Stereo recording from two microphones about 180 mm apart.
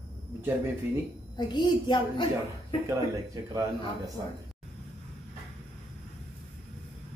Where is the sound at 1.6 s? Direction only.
25° left (ahead or behind).